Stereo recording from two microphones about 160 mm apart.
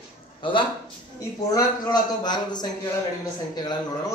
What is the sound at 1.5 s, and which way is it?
A man's voice, 25° left (ahead or behind).